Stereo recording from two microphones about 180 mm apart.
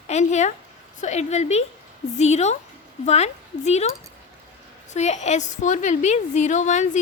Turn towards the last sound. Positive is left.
turn(degrees=40)  # may be behind; listen again after turning